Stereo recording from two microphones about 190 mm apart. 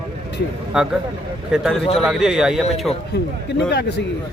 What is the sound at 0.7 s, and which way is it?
Speech, 5° right (ahead or behind).